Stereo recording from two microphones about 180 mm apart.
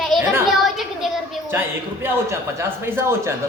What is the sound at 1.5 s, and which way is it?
Speech, 15° right (ahead or behind).